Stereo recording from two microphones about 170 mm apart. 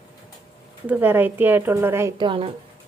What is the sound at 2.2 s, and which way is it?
Speech, 30° right (ahead or behind).